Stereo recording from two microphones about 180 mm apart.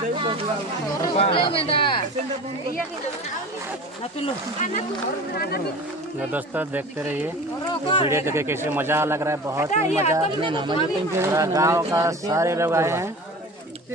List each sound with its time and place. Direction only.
0.2 s speech: 30° right (ahead or behind)
1.0 s speech: 30° left (ahead or behind)
6.3 s speech: 10° right (ahead or behind)
7.6 s speech: 30° left (ahead or behind)
8.1 s speech: 15° right (ahead or behind)
9.7 s speech: 40° left (ahead or behind)
10.4 s speech: 25° right (ahead or behind)